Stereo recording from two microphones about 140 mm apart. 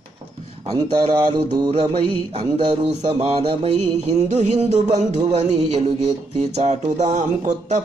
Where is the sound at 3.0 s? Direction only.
40° right (ahead or behind).